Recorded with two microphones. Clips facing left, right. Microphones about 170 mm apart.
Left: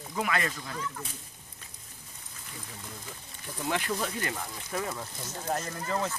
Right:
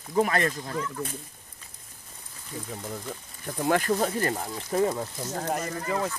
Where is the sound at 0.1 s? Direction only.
40° right (ahead or behind).